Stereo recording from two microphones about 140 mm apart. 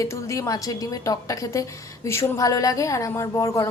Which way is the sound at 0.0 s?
20° left (ahead or behind).